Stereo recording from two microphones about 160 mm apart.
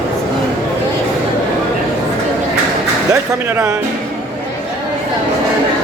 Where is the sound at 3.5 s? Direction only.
10° right (ahead or behind).